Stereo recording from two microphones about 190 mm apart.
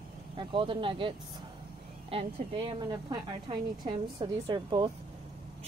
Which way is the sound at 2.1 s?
25° right (ahead or behind).